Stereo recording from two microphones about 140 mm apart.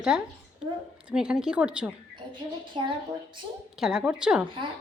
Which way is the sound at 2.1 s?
35° right (ahead or behind).